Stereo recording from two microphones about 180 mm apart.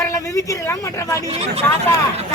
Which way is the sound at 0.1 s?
20° left (ahead or behind).